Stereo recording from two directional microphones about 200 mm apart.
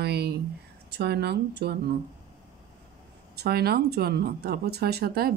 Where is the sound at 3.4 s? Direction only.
50° right (ahead or behind).